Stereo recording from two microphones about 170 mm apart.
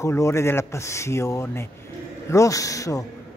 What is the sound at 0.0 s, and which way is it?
A man's voice, 15° left (ahead or behind).